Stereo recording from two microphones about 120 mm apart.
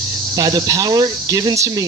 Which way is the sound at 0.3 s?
30° right (ahead or behind).